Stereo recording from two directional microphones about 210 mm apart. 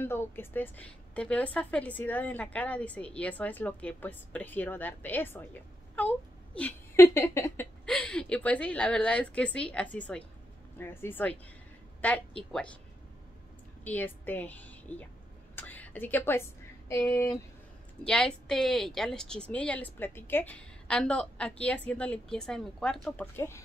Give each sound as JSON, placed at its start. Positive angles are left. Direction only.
{"t": 0.0, "sound": "a woman's voice", "side_deg": 10}
{"t": 13.8, "sound": "a woman's voice", "side_deg": 10}
{"t": 15.5, "sound": "a sound", "side_deg": 10}
{"t": 16.9, "sound": "a woman's voice", "side_deg": 15}
{"t": 18.0, "sound": "a woman's voice", "side_deg": 5}